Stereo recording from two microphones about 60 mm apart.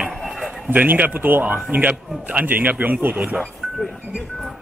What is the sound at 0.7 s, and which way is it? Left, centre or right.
Speech, right.